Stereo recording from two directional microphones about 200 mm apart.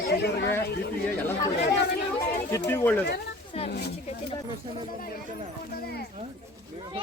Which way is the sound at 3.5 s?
30° left (ahead or behind).